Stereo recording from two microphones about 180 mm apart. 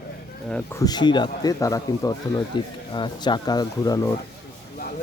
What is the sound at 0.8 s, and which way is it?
Speech, 25° left (ahead or behind).